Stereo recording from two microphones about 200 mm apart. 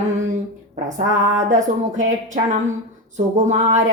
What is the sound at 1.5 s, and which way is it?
Speech, 40° right (ahead or behind).